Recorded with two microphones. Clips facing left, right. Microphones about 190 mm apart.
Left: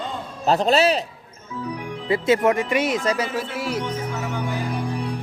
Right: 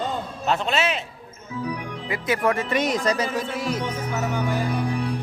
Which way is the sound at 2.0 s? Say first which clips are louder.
Left 5 dB; 30° left (ahead or behind).